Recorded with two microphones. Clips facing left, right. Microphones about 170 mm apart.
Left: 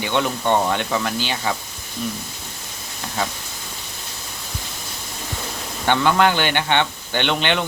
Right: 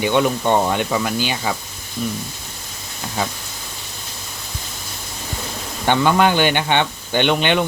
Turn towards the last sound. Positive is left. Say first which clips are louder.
# right 4 dB
turn(degrees=-15)  # may be behind; listen again after turning